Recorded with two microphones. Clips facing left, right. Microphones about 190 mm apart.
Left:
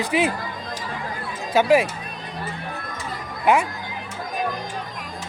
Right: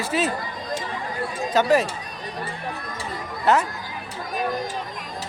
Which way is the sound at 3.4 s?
10° left (ahead or behind).